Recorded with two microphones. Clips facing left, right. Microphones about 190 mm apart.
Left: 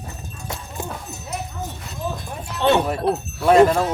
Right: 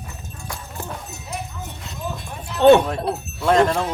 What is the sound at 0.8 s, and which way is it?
Clip-clop, 15° left (ahead or behind).